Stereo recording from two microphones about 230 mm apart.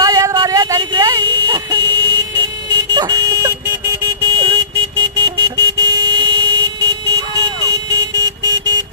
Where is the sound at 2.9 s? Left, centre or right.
Centre.